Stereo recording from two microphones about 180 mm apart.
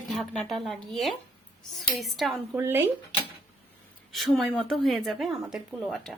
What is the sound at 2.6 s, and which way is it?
Speech, 15° right (ahead or behind).